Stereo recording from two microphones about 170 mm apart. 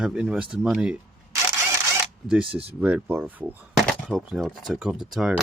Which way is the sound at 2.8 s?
10° right (ahead or behind).